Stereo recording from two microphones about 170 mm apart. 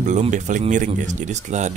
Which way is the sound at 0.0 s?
45° right (ahead or behind).